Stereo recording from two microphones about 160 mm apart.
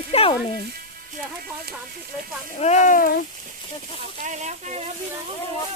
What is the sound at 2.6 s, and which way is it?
Speech, 45° left (ahead or behind).